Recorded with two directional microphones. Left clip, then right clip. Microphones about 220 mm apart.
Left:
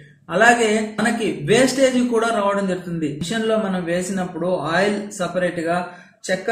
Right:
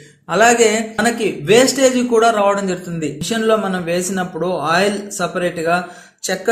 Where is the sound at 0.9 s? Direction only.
40° right (ahead or behind).